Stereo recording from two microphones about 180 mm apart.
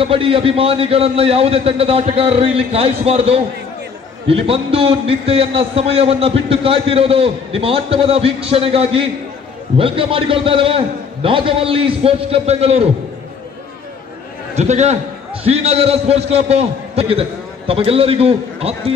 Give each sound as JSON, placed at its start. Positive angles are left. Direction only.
{"t": 0.0, "sound": "a man's voice", "side_deg": -30}
{"t": 14.5, "sound": "a man's voice", "side_deg": -40}